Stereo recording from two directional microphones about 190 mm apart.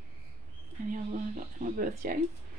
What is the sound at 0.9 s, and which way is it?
Speech, 45° right (ahead or behind).